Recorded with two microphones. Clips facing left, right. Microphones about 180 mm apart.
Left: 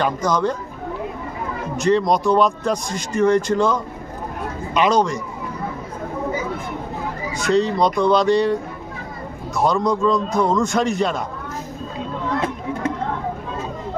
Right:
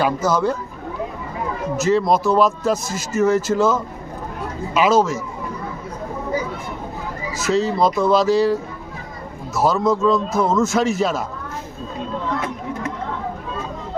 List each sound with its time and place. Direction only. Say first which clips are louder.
0.0 s speech: right 1 dB; 5° right (ahead or behind)
1.7 s speech: even; 5° right (ahead or behind)
7.3 s speech: left 1 dB; 5° right (ahead or behind)